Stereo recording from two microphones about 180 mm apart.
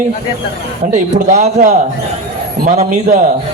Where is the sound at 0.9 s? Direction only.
40° right (ahead or behind).